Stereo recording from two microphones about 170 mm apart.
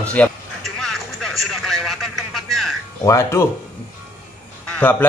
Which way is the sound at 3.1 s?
15° left (ahead or behind).